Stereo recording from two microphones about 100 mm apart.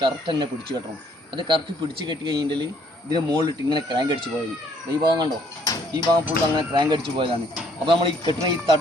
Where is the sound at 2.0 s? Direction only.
50° right (ahead or behind).